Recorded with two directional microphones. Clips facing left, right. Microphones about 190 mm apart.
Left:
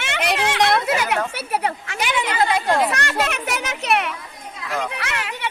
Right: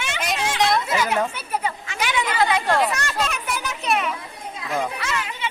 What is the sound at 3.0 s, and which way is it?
Speech, 65° left (ahead or behind).